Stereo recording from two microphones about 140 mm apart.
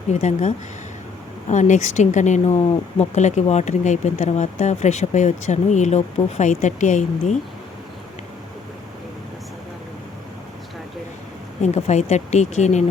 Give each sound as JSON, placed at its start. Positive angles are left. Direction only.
{"t": 0.1, "sound": "speech", "side_deg": 55}
{"t": 11.6, "sound": "speech", "side_deg": 55}